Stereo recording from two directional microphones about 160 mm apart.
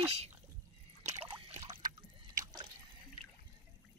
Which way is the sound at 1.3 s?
25° right (ahead or behind).